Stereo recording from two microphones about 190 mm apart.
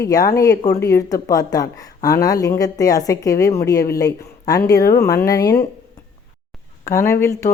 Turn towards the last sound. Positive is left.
turn(degrees=15)  # may be behind; listen again after turning